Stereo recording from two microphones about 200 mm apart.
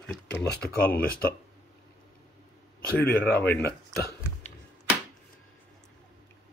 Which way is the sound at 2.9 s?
10° left (ahead or behind).